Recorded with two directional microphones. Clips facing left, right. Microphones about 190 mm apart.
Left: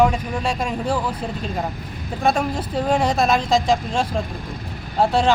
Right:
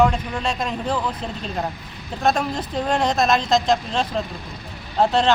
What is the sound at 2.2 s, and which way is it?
Speech, 10° left (ahead or behind).